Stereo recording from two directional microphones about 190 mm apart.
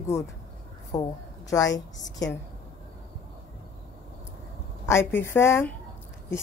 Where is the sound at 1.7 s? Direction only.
70° left (ahead or behind).